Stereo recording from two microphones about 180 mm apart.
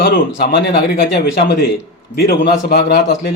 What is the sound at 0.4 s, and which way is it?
A man's voice, 60° left (ahead or behind).